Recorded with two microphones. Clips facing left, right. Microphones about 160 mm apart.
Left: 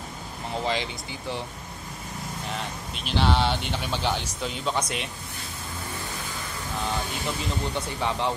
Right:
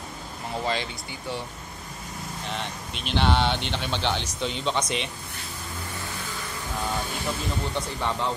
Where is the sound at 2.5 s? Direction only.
Centre (ahead or behind).